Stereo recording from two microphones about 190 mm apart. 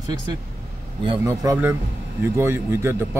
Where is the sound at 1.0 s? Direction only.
20° right (ahead or behind).